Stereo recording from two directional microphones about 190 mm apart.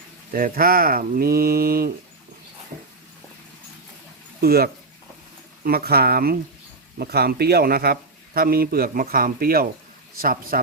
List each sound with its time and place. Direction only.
0.3 s a man's voice: 50° right (ahead or behind)
4.4 s a man's voice: 55° right (ahead or behind)